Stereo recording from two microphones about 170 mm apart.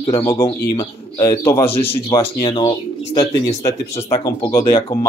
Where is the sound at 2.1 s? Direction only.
30° left (ahead or behind).